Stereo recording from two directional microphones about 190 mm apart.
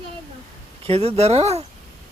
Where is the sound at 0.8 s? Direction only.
30° right (ahead or behind).